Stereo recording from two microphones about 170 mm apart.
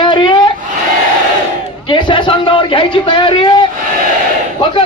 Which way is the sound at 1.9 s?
30° left (ahead or behind).